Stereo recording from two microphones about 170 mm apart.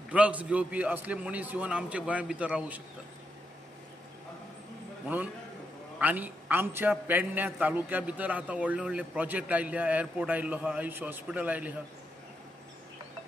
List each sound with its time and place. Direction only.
0.1 s a man's voice: 10° right (ahead or behind)
5.0 s a man's voice: 10° right (ahead or behind)